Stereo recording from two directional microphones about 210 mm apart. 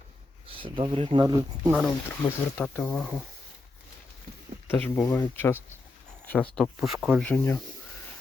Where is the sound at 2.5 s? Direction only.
5° left (ahead or behind).